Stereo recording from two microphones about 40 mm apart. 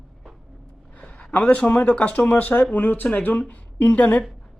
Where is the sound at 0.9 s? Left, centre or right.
Left.